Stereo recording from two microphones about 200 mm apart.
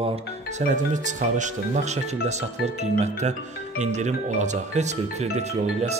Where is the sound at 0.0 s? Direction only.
35° right (ahead or behind).